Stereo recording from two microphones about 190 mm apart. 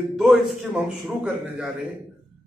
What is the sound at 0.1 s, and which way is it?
A man's voice, centre (ahead or behind).